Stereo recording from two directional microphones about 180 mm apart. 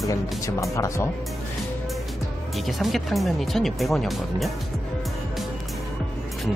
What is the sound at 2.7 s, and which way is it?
Speech, centre (ahead or behind).